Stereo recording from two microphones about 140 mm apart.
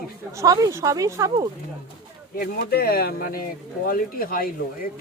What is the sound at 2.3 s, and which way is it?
Speech, 90° left.